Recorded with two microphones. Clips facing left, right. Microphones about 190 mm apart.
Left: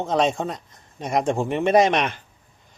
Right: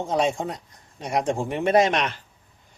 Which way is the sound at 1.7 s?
50° left (ahead or behind).